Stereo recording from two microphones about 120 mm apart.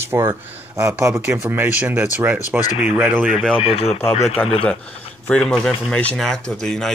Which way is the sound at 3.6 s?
55° left (ahead or behind).